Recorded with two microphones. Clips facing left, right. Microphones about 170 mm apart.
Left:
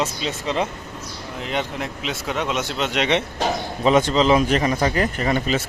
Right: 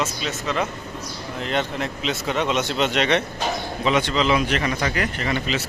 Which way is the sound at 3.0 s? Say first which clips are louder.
Left 1 dB; 20° left (ahead or behind).